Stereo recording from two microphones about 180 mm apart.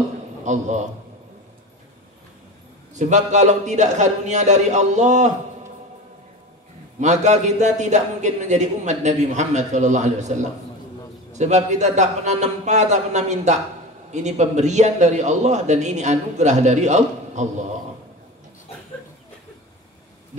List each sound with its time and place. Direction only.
0.4 s a man's voice: 40° right (ahead or behind)
2.9 s a man's voice: 40° right (ahead or behind)
7.0 s a man's voice: 40° right (ahead or behind)
11.3 s a man's voice: 40° right (ahead or behind)